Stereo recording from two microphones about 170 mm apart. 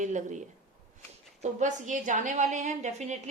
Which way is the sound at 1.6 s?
45° right (ahead or behind).